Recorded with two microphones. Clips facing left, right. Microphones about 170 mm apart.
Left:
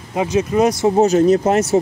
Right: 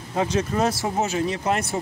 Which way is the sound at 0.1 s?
10° left (ahead or behind).